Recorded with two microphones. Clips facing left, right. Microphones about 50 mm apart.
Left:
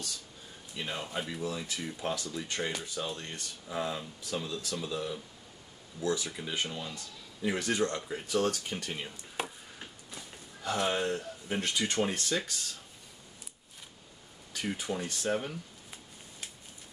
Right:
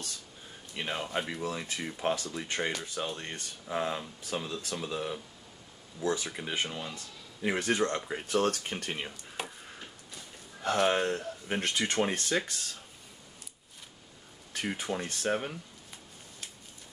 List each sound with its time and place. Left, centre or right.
0.7 s speech: right
9.4 s a sound: centre
10.6 s speech: right
14.5 s speech: right